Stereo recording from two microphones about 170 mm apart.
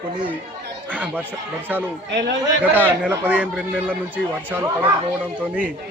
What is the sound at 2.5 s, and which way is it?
A man's voice, 10° right (ahead or behind).